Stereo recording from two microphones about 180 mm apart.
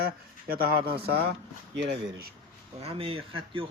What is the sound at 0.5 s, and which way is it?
Speech, 60° right (ahead or behind).